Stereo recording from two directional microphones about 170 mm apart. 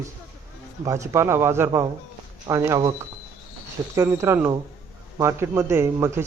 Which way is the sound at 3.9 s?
15° right (ahead or behind).